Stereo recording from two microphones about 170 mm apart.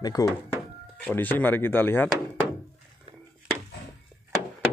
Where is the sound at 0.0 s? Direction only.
20° left (ahead or behind).